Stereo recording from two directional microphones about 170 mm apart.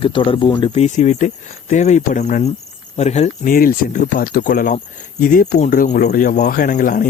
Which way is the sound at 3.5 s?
55° left (ahead or behind).